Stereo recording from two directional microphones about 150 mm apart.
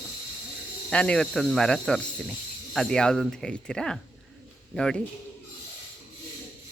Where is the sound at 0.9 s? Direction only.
5° left (ahead or behind).